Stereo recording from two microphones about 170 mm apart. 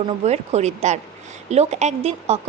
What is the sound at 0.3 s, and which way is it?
A woman's voice, 40° right (ahead or behind).